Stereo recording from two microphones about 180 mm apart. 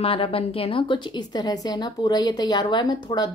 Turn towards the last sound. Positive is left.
turn(degrees=25)  # may be behind; listen again after turning